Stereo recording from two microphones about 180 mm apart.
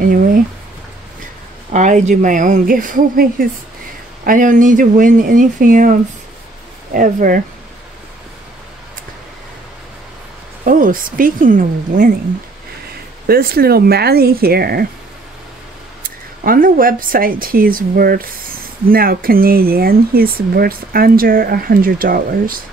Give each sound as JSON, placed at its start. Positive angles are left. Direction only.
{"t": 0.0, "sound": "speech", "side_deg": -50}
{"t": 1.7, "sound": "speech", "side_deg": -45}
{"t": 10.6, "sound": "speech", "side_deg": -50}
{"t": 13.3, "sound": "speech", "side_deg": -55}
{"t": 16.4, "sound": "speech", "side_deg": -50}